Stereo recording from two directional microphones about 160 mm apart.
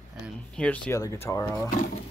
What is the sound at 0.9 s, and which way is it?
Speech, 15° left (ahead or behind).